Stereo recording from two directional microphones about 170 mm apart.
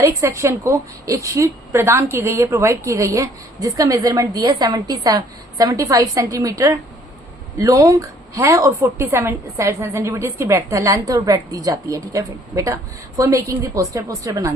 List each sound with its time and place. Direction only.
0.0 s a woman's voice: 20° right (ahead or behind)